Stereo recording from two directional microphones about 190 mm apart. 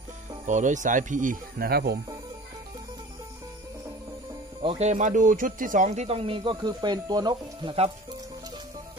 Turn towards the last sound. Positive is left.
turn(degrees=-30)  # may be behind; listen again after turning